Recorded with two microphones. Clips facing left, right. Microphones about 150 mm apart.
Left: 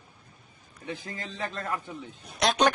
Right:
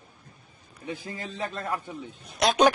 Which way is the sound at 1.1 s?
15° right (ahead or behind).